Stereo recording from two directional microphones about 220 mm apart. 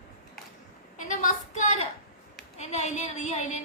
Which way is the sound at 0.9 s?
35° left (ahead or behind).